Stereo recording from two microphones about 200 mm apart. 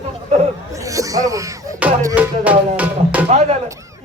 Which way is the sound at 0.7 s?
15° right (ahead or behind).